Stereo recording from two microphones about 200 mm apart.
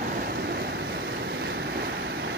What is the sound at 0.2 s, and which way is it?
Vehicle, 50° right (ahead or behind).